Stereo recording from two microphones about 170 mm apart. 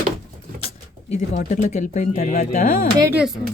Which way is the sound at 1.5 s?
45° left (ahead or behind).